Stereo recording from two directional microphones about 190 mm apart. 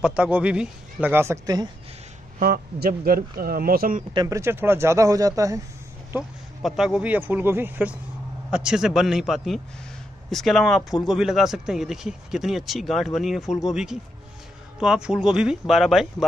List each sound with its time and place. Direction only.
0.0 s speech: 5° right (ahead or behind)
2.3 s speech: 50° right (ahead or behind)
4.1 s speech: 20° right (ahead or behind)
6.1 s a man's voice: 5° right (ahead or behind)